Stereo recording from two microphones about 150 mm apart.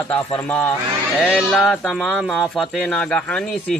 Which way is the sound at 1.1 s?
5° left (ahead or behind).